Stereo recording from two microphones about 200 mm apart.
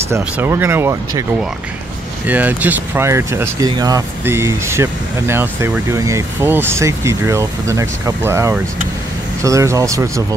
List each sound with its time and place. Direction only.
0.1 s speech: 10° right (ahead or behind)
2.2 s speech: 10° right (ahead or behind)